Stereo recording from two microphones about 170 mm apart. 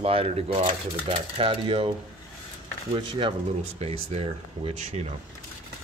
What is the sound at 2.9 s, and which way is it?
Speech, 30° right (ahead or behind).